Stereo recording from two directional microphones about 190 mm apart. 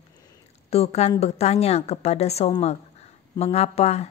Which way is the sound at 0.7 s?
35° left (ahead or behind).